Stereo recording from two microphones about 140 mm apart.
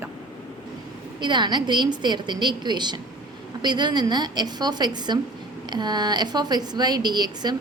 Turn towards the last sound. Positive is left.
turn(degrees=-30)  # may be behind; listen again after turning